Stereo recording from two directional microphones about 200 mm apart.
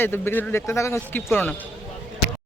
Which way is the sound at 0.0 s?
10° left (ahead or behind).